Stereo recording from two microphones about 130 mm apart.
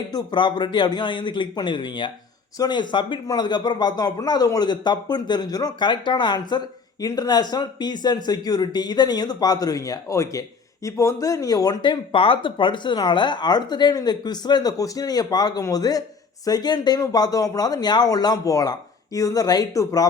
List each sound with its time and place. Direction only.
0.1 s speech: 35° left (ahead or behind)